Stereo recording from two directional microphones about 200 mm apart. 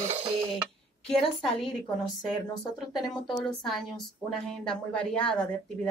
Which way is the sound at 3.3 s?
25° left (ahead or behind).